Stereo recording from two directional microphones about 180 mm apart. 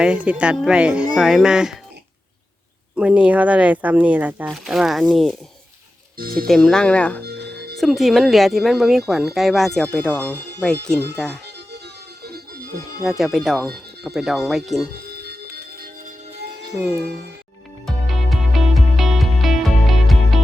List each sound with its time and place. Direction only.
0.0 s speech: 5° right (ahead or behind)
2.9 s speech: 5° right (ahead or behind)
6.1 s speech: 55° right (ahead or behind)
6.5 s speech: centre (ahead or behind)
7.3 s music: 65° right (ahead or behind)
7.8 s speech: centre (ahead or behind)
12.2 s music: 60° right (ahead or behind)
13.1 s speech: centre (ahead or behind)
15.1 s music: 60° right (ahead or behind)
16.7 s speech: 5° right (ahead or behind)
17.8 s music: centre (ahead or behind)